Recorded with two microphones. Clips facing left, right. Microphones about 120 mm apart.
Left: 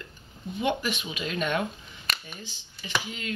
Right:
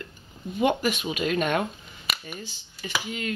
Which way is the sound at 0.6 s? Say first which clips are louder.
Right 5 dB; 50° right (ahead or behind).